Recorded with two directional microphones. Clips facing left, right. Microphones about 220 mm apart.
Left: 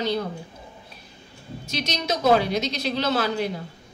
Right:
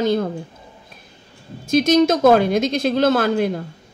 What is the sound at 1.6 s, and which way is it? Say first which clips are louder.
Speech: right 14 dB; 50° right (ahead or behind).